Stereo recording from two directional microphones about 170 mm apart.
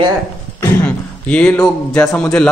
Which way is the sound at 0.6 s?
15° left (ahead or behind).